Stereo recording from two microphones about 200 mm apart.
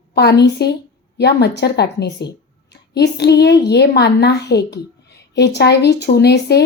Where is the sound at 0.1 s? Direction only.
55° left (ahead or behind).